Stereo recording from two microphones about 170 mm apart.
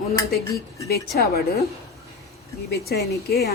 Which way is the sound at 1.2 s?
65° left (ahead or behind).